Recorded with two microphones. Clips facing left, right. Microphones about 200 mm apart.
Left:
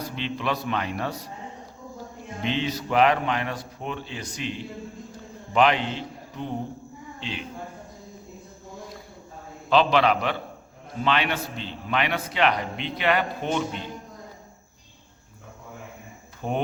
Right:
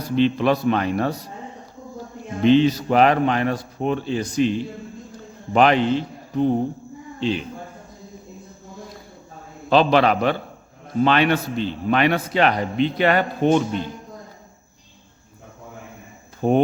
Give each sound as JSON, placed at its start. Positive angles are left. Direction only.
{"t": 0.2, "sound": "a man's voice", "side_deg": -40}
{"t": 2.4, "sound": "a man's voice", "side_deg": -40}
{"t": 9.6, "sound": "a man's voice", "side_deg": -40}
{"t": 16.4, "sound": "a man's voice", "side_deg": -40}